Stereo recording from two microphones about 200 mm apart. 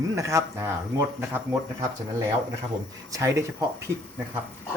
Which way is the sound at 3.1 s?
15° right (ahead or behind).